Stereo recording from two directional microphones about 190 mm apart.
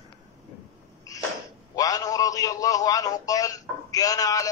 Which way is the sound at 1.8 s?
20° left (ahead or behind).